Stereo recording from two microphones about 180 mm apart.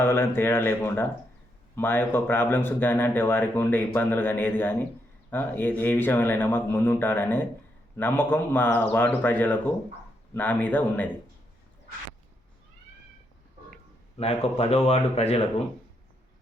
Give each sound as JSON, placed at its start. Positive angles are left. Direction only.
{"t": 0.0, "sound": "speech", "side_deg": 15}
{"t": 14.2, "sound": "speech", "side_deg": 35}